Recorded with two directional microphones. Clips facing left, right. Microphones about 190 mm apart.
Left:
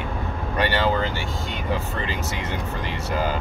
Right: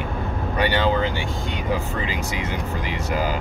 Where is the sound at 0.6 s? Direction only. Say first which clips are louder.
Right 1 dB; 15° right (ahead or behind).